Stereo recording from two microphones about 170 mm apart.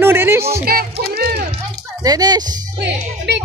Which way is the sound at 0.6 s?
65° right (ahead or behind).